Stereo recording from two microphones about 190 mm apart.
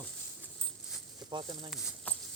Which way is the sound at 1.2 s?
20° right (ahead or behind).